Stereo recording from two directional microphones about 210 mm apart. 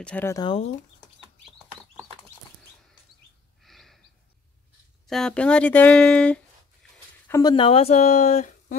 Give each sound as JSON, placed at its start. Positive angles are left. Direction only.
{"t": 0.0, "sound": "speech", "side_deg": 10}
{"t": 3.6, "sound": "gasp", "side_deg": 0}
{"t": 5.0, "sound": "speech", "side_deg": 0}